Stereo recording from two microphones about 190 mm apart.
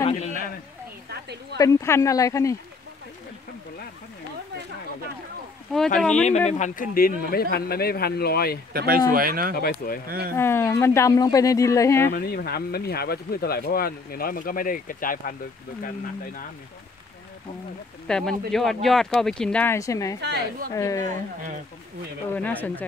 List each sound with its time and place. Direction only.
0.2 s a sound: 40° left (ahead or behind)
1.1 s a woman's voice: 60° right (ahead or behind)
1.6 s speech: 15° left (ahead or behind)
5.9 s speech: 5° left (ahead or behind)
6.5 s speech: 40° left (ahead or behind)
8.7 s speech: 50° right (ahead or behind)
9.6 s speech: 50° left (ahead or behind)
10.0 s speech: 55° right (ahead or behind)
10.3 s speech: 15° left (ahead or behind)
12.1 s speech: 55° left (ahead or behind)
18.0 s speech: 5° left (ahead or behind)
20.2 s a woman's voice: 60° right (ahead or behind)
20.7 s speech: 15° left (ahead or behind)
22.3 s speech: 10° left (ahead or behind)